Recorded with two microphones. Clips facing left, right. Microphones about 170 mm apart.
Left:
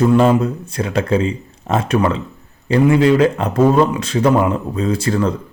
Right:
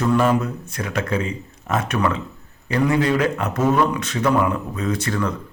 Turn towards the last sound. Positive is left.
turn(degrees=30)  # may be behind; listen again after turning